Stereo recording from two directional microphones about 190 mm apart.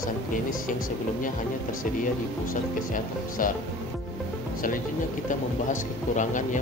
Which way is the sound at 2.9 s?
45° left (ahead or behind).